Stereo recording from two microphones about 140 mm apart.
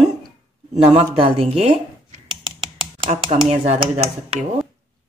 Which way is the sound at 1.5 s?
50° right (ahead or behind).